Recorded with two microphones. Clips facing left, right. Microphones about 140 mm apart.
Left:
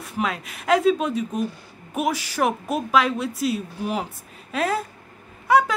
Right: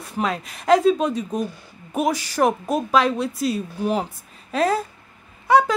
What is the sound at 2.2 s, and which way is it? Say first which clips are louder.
Speech: right 3 dB; 40° right (ahead or behind).